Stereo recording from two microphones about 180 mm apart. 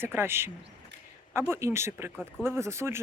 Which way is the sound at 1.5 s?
15° right (ahead or behind).